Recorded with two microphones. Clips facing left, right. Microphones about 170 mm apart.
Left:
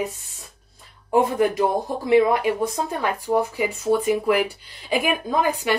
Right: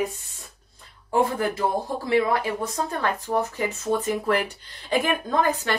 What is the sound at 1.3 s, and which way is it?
Speech, 15° left (ahead or behind).